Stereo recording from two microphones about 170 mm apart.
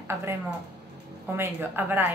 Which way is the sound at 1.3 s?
15° right (ahead or behind).